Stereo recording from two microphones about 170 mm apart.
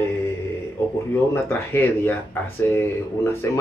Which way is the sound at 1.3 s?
15° left (ahead or behind).